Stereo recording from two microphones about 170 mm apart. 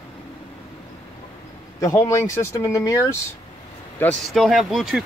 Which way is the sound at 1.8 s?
15° left (ahead or behind).